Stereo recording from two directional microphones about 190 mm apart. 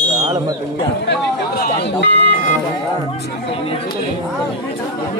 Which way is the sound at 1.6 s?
60° left (ahead or behind).